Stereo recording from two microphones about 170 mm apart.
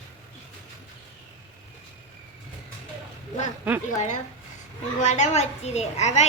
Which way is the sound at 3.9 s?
45° left (ahead or behind).